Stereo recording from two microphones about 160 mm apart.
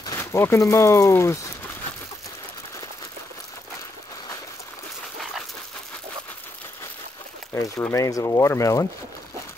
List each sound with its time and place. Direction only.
0.0 s speech: 20° left (ahead or behind)
7.5 s speech: 15° left (ahead or behind)